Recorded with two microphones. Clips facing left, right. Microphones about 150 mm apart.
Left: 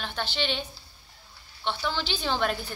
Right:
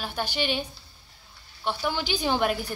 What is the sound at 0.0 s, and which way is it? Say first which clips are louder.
A woman's voice: right 2 dB; 10° right (ahead or behind).